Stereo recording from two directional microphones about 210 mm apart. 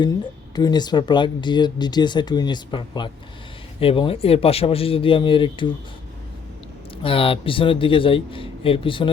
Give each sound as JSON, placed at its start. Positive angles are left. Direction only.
{"t": 0.5, "sound": "speech", "side_deg": 20}
{"t": 7.0, "sound": "speech", "side_deg": 25}